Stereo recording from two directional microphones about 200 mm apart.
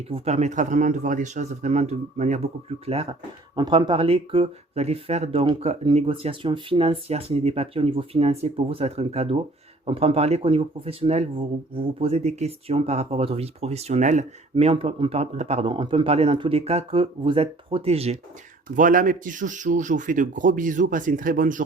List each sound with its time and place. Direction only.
0.1 s speech: 35° right (ahead or behind)
18.8 s speech: 40° right (ahead or behind)